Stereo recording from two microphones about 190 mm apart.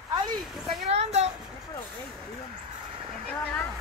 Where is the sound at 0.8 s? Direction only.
35° right (ahead or behind).